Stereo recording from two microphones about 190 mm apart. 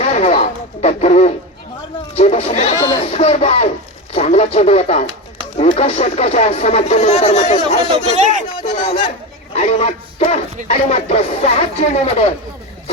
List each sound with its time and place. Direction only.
0.0 s speech: 35° left (ahead or behind)
2.7 s speech: 20° left (ahead or behind)
3.1 s speech: 35° left (ahead or behind)